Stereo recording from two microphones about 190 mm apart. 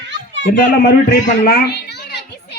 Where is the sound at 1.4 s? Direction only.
55° left (ahead or behind).